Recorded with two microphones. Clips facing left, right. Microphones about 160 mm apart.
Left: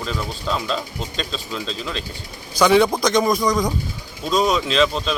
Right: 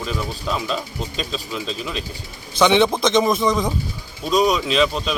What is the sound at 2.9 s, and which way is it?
Speech, 25° right (ahead or behind).